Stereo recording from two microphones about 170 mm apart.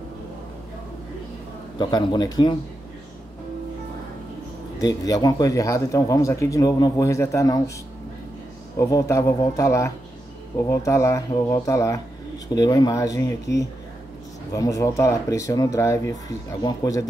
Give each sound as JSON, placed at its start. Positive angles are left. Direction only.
{"t": 1.8, "sound": "speech", "side_deg": 25}
{"t": 4.7, "sound": "speech", "side_deg": 20}
{"t": 8.7, "sound": "speech", "side_deg": 20}